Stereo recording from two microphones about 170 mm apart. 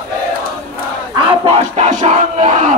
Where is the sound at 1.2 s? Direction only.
35° right (ahead or behind).